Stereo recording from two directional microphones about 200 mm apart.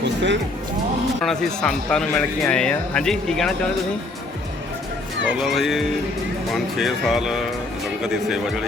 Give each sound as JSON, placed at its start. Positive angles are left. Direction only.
{"t": 0.0, "sound": "music", "side_deg": -65}
{"t": 1.2, "sound": "speech", "side_deg": 0}
{"t": 5.3, "sound": "speech", "side_deg": 0}